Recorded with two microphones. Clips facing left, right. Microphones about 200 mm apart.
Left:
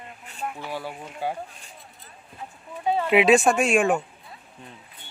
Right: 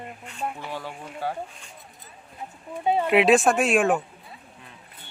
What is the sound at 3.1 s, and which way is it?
Speech, centre (ahead or behind).